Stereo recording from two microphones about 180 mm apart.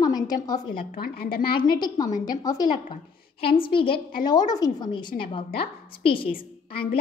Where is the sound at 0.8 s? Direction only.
55° left (ahead or behind).